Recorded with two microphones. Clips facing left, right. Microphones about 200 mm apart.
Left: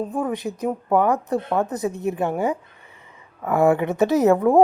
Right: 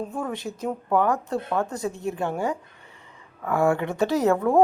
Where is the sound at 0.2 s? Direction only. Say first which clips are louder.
Left 5 dB; 15° left (ahead or behind).